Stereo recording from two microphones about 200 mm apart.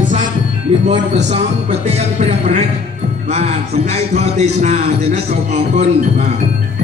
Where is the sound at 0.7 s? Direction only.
35° right (ahead or behind).